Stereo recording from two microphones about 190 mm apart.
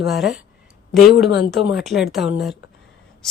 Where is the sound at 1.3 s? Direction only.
65° left (ahead or behind).